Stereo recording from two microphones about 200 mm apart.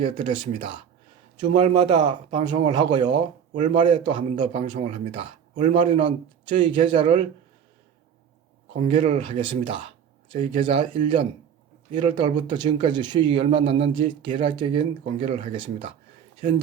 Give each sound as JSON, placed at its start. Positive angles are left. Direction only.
{"t": 0.0, "sound": "speech", "side_deg": -25}
{"t": 8.7, "sound": "speech", "side_deg": -30}